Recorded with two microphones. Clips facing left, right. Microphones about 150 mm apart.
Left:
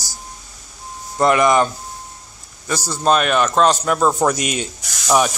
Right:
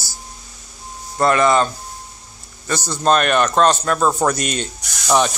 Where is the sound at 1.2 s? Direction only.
15° left (ahead or behind).